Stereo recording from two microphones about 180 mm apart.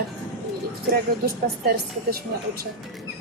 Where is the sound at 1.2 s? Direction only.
60° right (ahead or behind).